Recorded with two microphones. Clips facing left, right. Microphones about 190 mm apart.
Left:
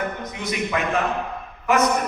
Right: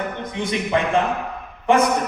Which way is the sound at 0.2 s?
30° right (ahead or behind).